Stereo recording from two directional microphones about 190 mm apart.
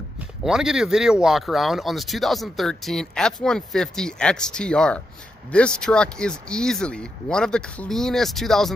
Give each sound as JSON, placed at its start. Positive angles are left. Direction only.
{"t": 0.4, "sound": "speech", "side_deg": -5}